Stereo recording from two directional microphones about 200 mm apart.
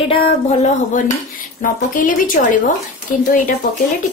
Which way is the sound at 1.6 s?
45° left (ahead or behind).